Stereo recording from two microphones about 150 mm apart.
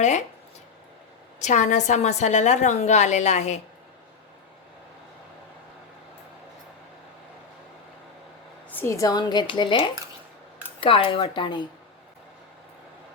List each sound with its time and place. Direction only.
0.0 s speech: 50° left (ahead or behind)
1.4 s a woman's voice: 55° left (ahead or behind)
8.7 s a woman's voice: 15° left (ahead or behind); by 11.6 s 35° left (ahead or behind)